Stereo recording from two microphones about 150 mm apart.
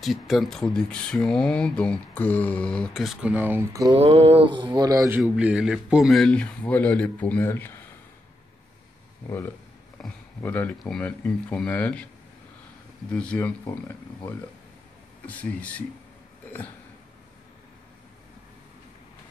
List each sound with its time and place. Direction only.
0.0 s speech: centre (ahead or behind)
3.9 s mantra: 40° right (ahead or behind); by 5.2 s 20° right (ahead or behind)
5.2 s speech: 5° right (ahead or behind); by 7.7 s 15° left (ahead or behind)
10.0 s speech: 5° left (ahead or behind)
13.1 s speech: 5° left (ahead or behind)
15.2 s speech: 10° left (ahead or behind)